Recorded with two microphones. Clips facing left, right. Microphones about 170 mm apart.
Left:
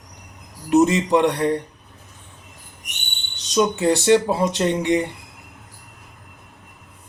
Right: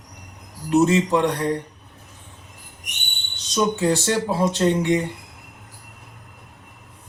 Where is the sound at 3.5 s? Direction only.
15° left (ahead or behind).